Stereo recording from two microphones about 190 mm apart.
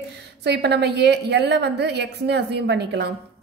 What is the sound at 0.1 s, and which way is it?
A woman's voice, 60° right (ahead or behind).